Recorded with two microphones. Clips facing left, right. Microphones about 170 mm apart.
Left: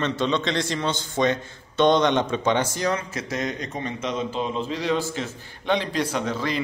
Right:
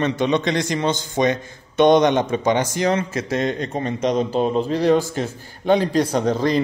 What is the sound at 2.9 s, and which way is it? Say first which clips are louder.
A man's voice: right 6 dB; 25° right (ahead or behind).